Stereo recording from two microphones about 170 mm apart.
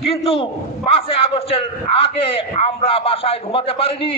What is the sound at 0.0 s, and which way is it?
A man's voice, 35° left (ahead or behind).